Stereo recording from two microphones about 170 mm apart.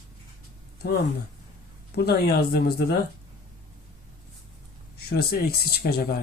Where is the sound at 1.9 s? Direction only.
70° left (ahead or behind).